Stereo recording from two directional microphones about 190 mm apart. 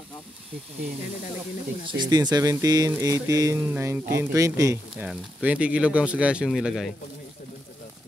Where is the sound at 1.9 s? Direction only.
20° right (ahead or behind); by 6.9 s centre (ahead or behind).